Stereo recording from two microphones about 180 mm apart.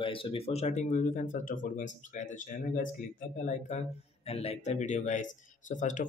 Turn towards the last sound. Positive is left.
turn(degrees=45)  # may be behind; listen again after turning